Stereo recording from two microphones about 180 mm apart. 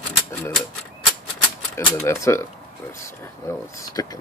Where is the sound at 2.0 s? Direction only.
15° left (ahead or behind).